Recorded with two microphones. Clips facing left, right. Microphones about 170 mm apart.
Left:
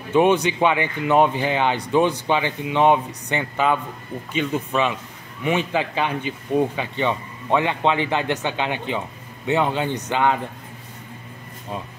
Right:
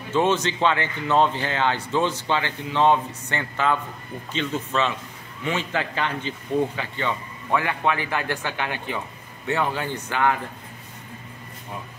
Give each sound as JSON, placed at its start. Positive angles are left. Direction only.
{"t": 0.1, "sound": "speech", "side_deg": 15}